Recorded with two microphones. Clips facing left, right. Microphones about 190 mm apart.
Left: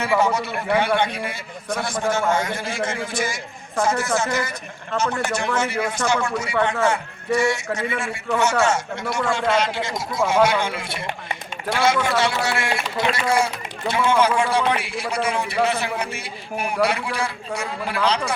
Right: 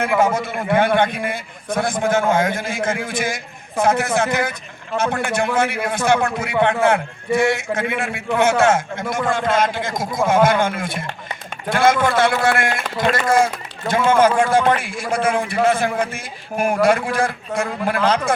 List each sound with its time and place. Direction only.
0.2 s a man's voice: 50° right (ahead or behind)